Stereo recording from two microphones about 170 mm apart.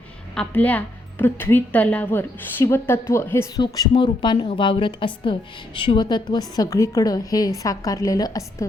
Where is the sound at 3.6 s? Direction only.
25° left (ahead or behind).